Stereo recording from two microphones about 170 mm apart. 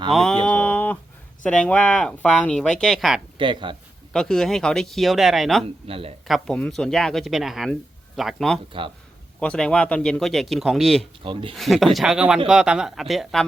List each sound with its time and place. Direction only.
0.1 s speech: centre (ahead or behind)
0.4 s a sound: 10° left (ahead or behind)
1.5 s speech: 5° left (ahead or behind)
3.3 s speech: 30° right (ahead or behind)
4.1 s speech: 5° left (ahead or behind)
5.6 s speech: 35° right (ahead or behind)
6.2 s speech: centre (ahead or behind)
11.2 s speech: 30° right (ahead or behind)
11.5 s speech: centre (ahead or behind)